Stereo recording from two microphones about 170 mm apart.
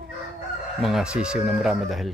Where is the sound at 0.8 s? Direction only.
5° right (ahead or behind).